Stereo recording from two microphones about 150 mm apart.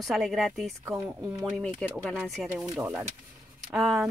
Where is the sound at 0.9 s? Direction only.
15° right (ahead or behind).